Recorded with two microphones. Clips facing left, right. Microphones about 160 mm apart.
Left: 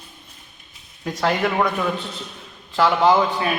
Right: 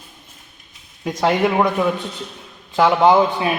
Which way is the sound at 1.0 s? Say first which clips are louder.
Right 4 dB; 20° right (ahead or behind).